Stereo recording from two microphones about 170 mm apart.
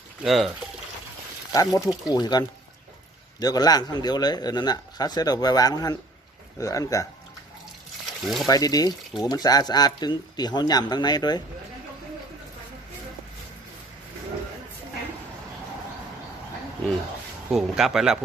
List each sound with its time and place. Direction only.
0.2 s speech: centre (ahead or behind)
1.5 s speech: 20° left (ahead or behind)
3.4 s speech: 20° left (ahead or behind)
8.0 s a sound: centre (ahead or behind)
8.4 s speech: 20° left (ahead or behind)
17.5 s speech: centre (ahead or behind)